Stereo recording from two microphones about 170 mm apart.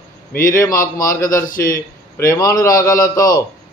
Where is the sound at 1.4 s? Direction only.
55° left (ahead or behind).